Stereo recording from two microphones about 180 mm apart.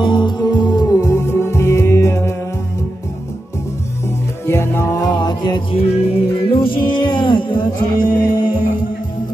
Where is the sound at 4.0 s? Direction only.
15° left (ahead or behind).